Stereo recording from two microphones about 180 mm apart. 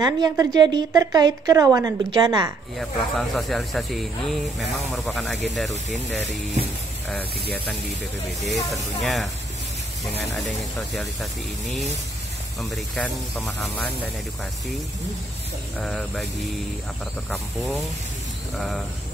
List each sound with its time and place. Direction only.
0.0 s a woman's voice: 20° right (ahead or behind)
2.8 s speech: centre (ahead or behind)
8.3 s speech: centre (ahead or behind)
10.9 s speech: centre (ahead or behind)
15.8 s speech: 5° left (ahead or behind)